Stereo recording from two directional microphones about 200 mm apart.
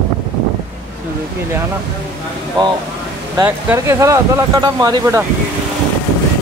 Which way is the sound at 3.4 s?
15° right (ahead or behind).